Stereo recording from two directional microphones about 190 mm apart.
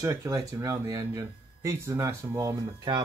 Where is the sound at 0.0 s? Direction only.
15° right (ahead or behind).